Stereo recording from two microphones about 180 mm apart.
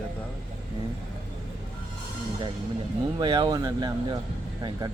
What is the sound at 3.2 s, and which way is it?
Speech, 25° right (ahead or behind).